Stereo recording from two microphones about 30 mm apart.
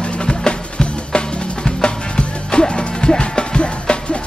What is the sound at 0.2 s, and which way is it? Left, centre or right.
Music, left.